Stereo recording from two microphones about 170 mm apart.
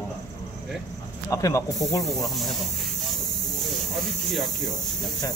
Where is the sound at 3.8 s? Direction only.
Centre (ahead or behind).